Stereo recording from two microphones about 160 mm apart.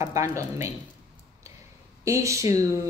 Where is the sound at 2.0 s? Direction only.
20° right (ahead or behind).